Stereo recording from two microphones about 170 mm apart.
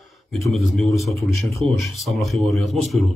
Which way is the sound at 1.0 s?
Centre (ahead or behind).